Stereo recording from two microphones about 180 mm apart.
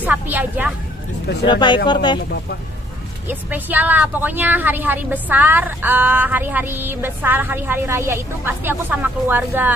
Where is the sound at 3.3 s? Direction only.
10° right (ahead or behind).